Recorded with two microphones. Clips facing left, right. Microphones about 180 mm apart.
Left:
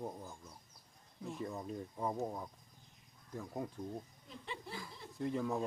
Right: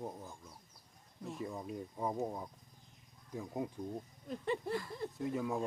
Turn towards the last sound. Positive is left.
turn(degrees=-5)  # may be behind; listen again after turning